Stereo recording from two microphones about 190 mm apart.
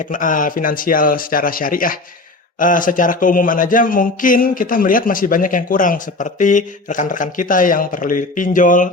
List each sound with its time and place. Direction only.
0.0 s speech: 45° left (ahead or behind)